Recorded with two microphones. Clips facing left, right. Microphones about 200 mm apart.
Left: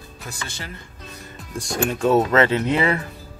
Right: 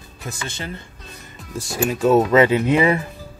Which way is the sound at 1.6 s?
5° right (ahead or behind).